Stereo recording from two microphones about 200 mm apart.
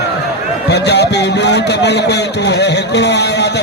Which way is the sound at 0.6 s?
55° left (ahead or behind).